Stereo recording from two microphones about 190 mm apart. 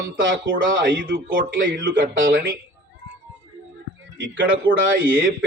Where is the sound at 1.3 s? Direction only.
70° right (ahead or behind).